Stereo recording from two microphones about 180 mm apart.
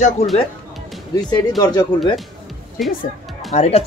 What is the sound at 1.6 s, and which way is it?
Speech, 20° left (ahead or behind).